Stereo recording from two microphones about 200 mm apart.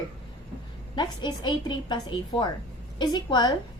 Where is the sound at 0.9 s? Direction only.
20° left (ahead or behind).